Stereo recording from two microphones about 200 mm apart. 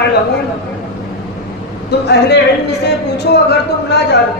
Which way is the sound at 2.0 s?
55° left (ahead or behind).